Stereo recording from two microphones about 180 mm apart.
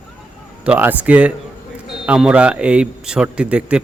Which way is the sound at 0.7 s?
10° right (ahead or behind).